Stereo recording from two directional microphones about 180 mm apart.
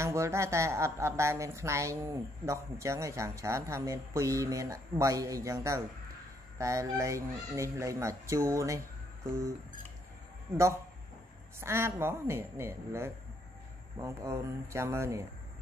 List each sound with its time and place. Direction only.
0.0 s a woman's voice: 15° right (ahead or behind)
11.6 s a woman's voice: 15° right (ahead or behind)